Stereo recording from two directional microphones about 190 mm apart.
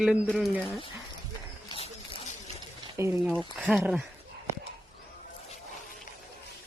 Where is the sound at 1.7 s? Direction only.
30° left (ahead or behind).